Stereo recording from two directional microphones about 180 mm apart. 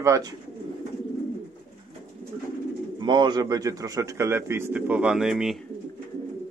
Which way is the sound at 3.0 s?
25° right (ahead or behind).